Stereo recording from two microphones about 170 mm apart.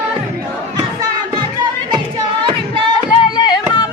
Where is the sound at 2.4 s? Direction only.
30° right (ahead or behind).